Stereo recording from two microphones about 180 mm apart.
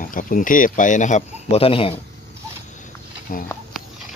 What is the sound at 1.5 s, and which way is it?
Speech, 30° left (ahead or behind).